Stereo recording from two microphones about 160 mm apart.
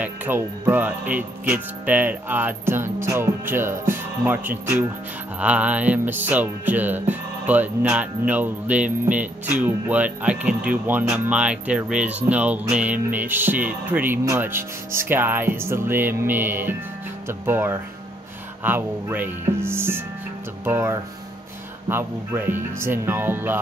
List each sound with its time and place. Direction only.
0.0 s music: 10° right (ahead or behind)